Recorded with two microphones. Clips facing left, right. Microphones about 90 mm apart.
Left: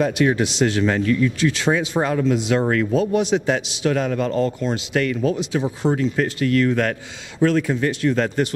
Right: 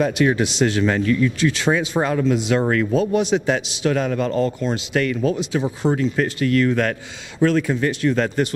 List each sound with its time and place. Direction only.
0.0 s a man's voice: 15° right (ahead or behind)